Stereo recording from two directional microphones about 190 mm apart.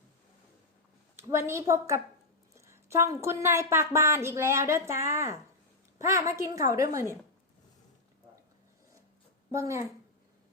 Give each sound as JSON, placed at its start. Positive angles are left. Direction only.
{"t": 1.1, "sound": "speech", "side_deg": -15}
{"t": 9.5, "sound": "speech", "side_deg": -15}